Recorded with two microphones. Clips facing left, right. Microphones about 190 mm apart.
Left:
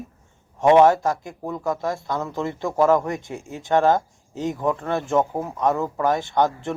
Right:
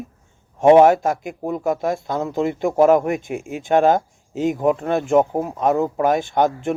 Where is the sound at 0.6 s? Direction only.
30° right (ahead or behind).